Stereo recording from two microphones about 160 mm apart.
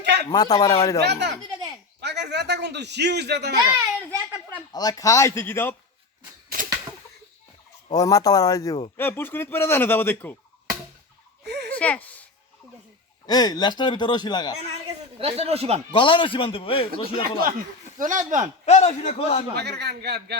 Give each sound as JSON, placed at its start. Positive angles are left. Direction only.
{"t": 0.0, "sound": "a sound", "side_deg": -90}
{"t": 0.3, "sound": "speech", "side_deg": 25}
{"t": 1.0, "sound": "a man's voice", "side_deg": -90}
{"t": 3.6, "sound": "a sound", "side_deg": -20}
{"t": 4.7, "sound": "speech", "side_deg": 25}
{"t": 7.9, "sound": "speech", "side_deg": 25}
{"t": 11.4, "sound": "a sound", "side_deg": -90}
{"t": 11.7, "sound": "a sound", "side_deg": 10}
{"t": 13.2, "sound": "speech", "side_deg": 25}
{"t": 14.7, "sound": "a woman's voice", "side_deg": -40}
{"t": 15.9, "sound": "a man's voice", "side_deg": 30}
{"t": 17.9, "sound": "speech", "side_deg": -55}
{"t": 18.6, "sound": "a man's voice", "side_deg": 45}
{"t": 19.5, "sound": "a man's voice", "side_deg": -90}